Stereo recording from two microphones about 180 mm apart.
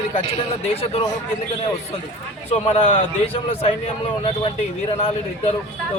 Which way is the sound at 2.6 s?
30° left (ahead or behind).